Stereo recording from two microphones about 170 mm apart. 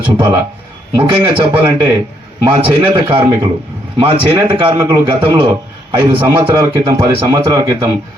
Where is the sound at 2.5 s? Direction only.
30° right (ahead or behind).